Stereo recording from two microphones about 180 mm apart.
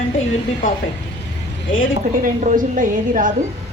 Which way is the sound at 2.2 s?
50° right (ahead or behind).